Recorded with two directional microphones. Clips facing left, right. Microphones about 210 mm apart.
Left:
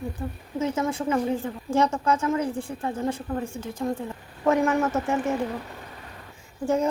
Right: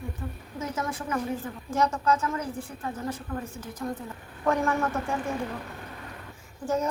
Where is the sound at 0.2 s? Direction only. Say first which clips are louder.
Left 9 dB; 30° left (ahead or behind).